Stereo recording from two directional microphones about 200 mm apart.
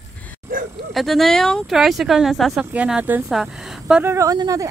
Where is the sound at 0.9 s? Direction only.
Centre (ahead or behind); by 4.6 s 15° right (ahead or behind).